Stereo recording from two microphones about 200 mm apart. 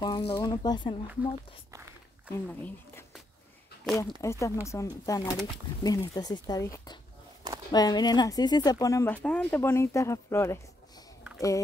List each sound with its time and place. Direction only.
0.0 s speech: 20° left (ahead or behind)
1.7 s walk: 15° right (ahead or behind)
2.3 s speech: 10° left (ahead or behind)
4.2 s speech: 15° left (ahead or behind)